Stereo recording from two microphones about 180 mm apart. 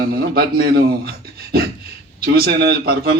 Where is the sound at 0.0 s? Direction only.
55° right (ahead or behind).